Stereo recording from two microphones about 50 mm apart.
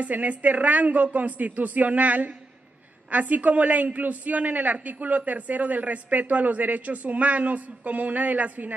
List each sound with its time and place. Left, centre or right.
0.0 s speech: right